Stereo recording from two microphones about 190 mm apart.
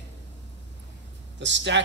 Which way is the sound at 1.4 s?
70° right (ahead or behind).